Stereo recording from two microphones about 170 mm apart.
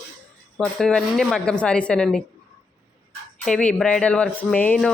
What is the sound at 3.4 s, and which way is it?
Speech, 5° left (ahead or behind).